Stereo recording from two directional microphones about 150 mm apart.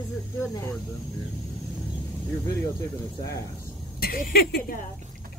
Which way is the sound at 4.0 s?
75° left (ahead or behind).